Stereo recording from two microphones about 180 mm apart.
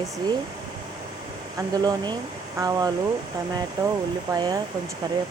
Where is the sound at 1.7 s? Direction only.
20° right (ahead or behind).